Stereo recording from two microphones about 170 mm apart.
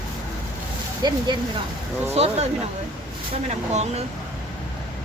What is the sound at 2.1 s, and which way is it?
Speech, 40° right (ahead or behind).